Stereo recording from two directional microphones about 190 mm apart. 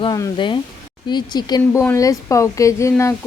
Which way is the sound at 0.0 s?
25° left (ahead or behind).